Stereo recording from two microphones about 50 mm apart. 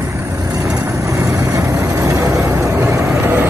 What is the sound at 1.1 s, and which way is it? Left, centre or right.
Vehicle, right.